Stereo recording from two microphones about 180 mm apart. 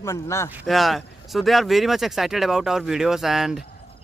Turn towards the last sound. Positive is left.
turn(degrees=0)  # may be behind; listen again after turning